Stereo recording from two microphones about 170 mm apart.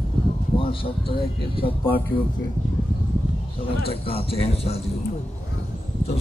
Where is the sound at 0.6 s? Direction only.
30° left (ahead or behind).